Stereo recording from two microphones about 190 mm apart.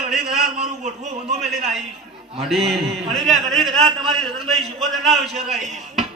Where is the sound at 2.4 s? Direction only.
Centre (ahead or behind).